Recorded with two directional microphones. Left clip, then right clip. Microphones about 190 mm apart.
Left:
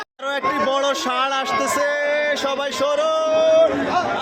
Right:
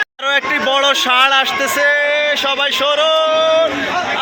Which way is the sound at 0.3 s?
5° right (ahead or behind).